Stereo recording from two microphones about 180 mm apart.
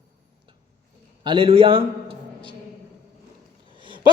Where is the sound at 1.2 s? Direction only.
30° right (ahead or behind).